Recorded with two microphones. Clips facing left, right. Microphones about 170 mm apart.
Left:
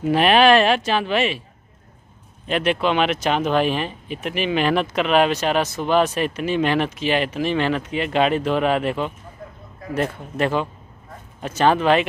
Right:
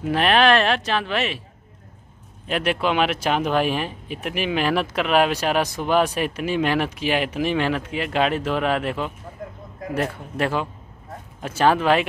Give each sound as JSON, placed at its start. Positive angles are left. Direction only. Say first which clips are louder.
{"t": 0.0, "sound": "speech", "louder": "left 3 dB", "side_deg": 5}
{"t": 2.4, "sound": "speech", "louder": "left 2 dB", "side_deg": -5}